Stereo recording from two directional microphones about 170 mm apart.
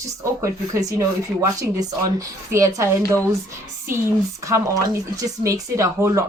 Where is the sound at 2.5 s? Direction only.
15° right (ahead or behind).